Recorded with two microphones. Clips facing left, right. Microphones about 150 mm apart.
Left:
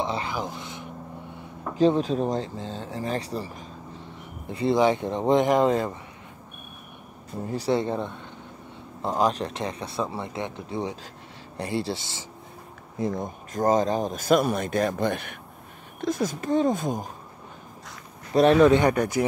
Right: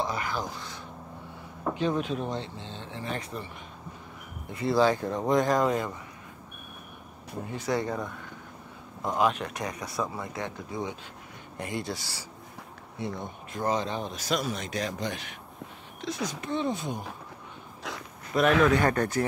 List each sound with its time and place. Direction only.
0.0 s a sound: 25° left (ahead or behind)
0.3 s speech: 20° left (ahead or behind)
1.8 s speech: 35° left (ahead or behind)
4.5 s speech: 25° left (ahead or behind)
7.4 s speech: 35° left (ahead or behind)
13.0 s speech: 45° left (ahead or behind)
18.3 s speech: 30° left (ahead or behind); by 19.2 s 10° left (ahead or behind)